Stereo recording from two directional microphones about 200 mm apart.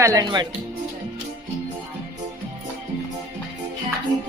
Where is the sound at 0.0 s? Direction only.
15° right (ahead or behind).